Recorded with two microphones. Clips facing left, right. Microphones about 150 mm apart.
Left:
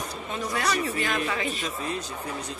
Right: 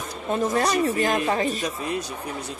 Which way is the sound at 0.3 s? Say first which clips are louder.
Right 7 dB; 45° right (ahead or behind).